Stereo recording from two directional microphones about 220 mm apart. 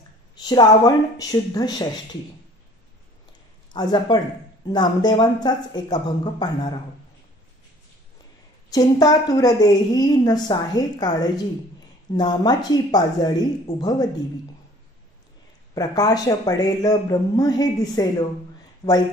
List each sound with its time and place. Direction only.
0.4 s a woman's voice: 20° left (ahead or behind)
3.7 s speech: 20° left (ahead or behind)
8.7 s a woman's voice: 15° left (ahead or behind)
15.7 s a woman's voice: 15° left (ahead or behind)